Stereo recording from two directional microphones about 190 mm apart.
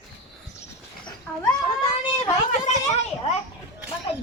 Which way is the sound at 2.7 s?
35° left (ahead or behind).